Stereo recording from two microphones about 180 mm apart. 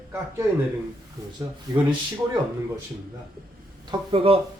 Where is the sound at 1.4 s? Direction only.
25° right (ahead or behind).